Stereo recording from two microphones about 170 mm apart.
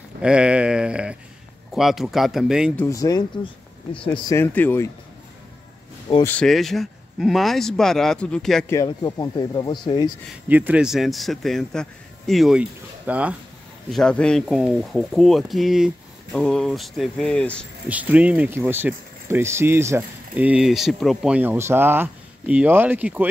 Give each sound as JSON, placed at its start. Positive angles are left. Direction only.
{"t": 0.2, "sound": "a sound", "side_deg": -5}
{"t": 1.8, "sound": "speech", "side_deg": 0}
{"t": 2.7, "sound": "speech", "side_deg": 10}
{"t": 3.0, "sound": "speech", "side_deg": 20}
{"t": 4.4, "sound": "speech", "side_deg": 15}
{"t": 6.2, "sound": "speech", "side_deg": 5}
{"t": 8.6, "sound": "speech", "side_deg": 20}
{"t": 10.3, "sound": "speech", "side_deg": -10}
{"t": 13.8, "sound": "speech", "side_deg": 5}
{"t": 17.8, "sound": "speech", "side_deg": -10}